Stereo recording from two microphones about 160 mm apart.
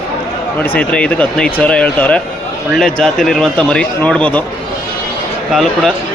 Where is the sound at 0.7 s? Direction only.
5° left (ahead or behind).